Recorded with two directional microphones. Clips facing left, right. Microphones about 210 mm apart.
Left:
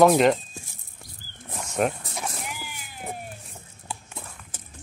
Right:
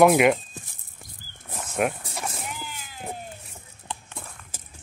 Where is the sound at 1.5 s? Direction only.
5° right (ahead or behind).